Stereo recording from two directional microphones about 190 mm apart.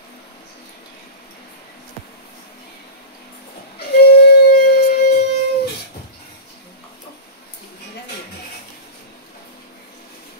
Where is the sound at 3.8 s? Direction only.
60° left (ahead or behind).